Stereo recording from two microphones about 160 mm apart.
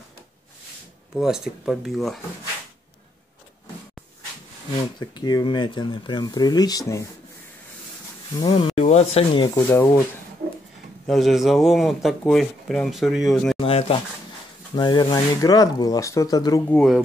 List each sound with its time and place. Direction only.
1.1 s speech: 5° right (ahead or behind)
5.0 s speech: 25° left (ahead or behind)
8.4 s speech: 30° left (ahead or behind)
9.7 s speech: 15° left (ahead or behind)
11.1 s speech: centre (ahead or behind)
13.6 s speech: 35° left (ahead or behind)
14.8 s speech: 25° left (ahead or behind)